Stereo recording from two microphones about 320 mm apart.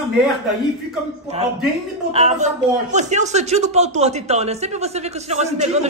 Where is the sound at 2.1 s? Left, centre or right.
Centre.